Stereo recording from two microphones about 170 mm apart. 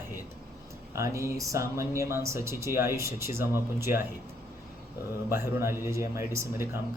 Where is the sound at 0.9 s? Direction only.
15° right (ahead or behind).